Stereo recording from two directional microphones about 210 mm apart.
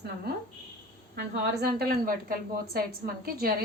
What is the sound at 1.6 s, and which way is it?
A woman's voice, 45° right (ahead or behind).